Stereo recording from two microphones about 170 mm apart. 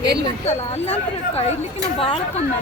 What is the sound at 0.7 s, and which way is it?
Speech, 35° left (ahead or behind).